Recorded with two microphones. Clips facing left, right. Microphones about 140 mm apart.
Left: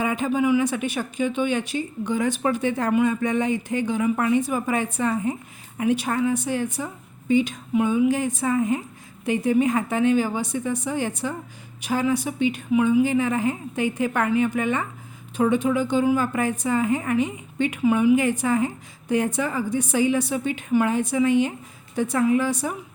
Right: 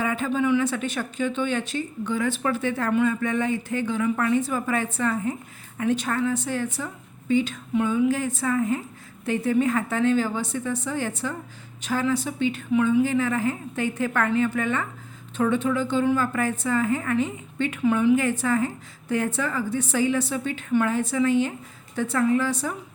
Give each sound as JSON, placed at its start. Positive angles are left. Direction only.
{"t": 0.0, "sound": "speech", "side_deg": 15}